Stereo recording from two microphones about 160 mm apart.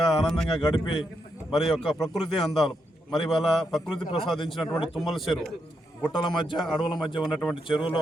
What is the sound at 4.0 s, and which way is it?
Speech, 30° left (ahead or behind).